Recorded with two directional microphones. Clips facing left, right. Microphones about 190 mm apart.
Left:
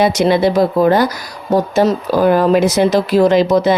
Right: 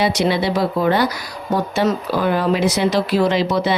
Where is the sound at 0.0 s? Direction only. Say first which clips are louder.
Left 6 dB; 45° left (ahead or behind).